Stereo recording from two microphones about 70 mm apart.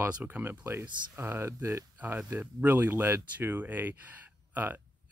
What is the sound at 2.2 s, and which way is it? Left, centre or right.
Speech, right.